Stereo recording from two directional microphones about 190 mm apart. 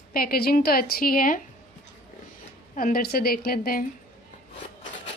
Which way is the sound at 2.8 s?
50° left (ahead or behind).